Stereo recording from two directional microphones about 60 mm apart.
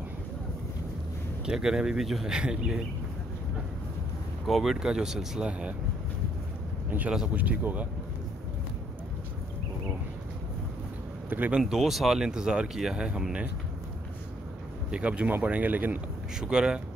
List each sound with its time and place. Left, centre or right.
1.4 s speech: centre
4.5 s speech: centre
5.4 s speech: centre
7.3 s speech: right
11.2 s speech: right
11.6 s speech: centre
14.9 s speech: centre
16.3 s speech: centre